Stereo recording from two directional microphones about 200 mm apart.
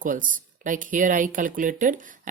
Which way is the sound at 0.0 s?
40° right (ahead or behind).